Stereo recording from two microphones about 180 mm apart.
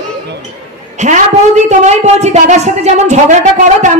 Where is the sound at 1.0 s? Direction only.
40° right (ahead or behind).